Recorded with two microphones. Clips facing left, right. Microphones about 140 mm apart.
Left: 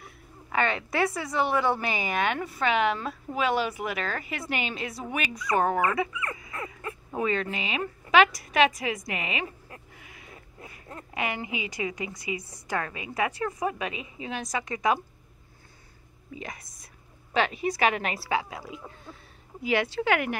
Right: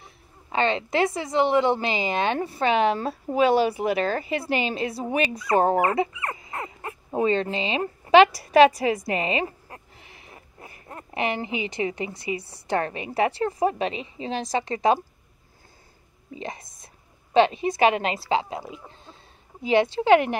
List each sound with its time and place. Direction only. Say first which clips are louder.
0.0 s a woman's voice: left 2 dB; 25° right (ahead or behind)
16.3 s a woman's voice: right 5 dB; 25° right (ahead or behind)